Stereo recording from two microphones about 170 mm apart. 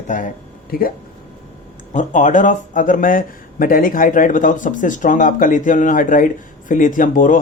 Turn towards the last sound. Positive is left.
turn(degrees=50)  # may be behind; listen again after turning